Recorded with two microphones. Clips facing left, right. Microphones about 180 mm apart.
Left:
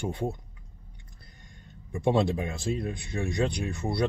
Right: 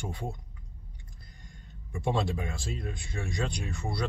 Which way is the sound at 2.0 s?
20° left (ahead or behind).